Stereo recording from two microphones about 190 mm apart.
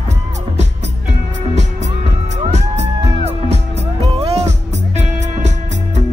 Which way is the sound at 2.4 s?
35° right (ahead or behind).